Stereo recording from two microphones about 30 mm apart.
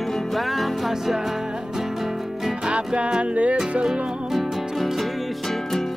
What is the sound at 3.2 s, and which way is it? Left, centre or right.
Music, right.